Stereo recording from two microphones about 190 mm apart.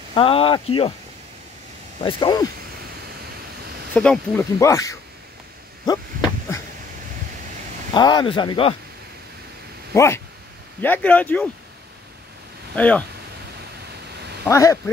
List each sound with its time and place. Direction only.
0.1 s speech: 30° left (ahead or behind)
2.0 s speech: 25° left (ahead or behind)
3.9 s speech: 5° left (ahead or behind)
4.6 s speech: 15° left (ahead or behind)
7.9 s speech: 25° left (ahead or behind)
9.9 s speech: 15° left (ahead or behind)
12.7 s speech: 10° left (ahead or behind)
14.5 s speech: 15° left (ahead or behind)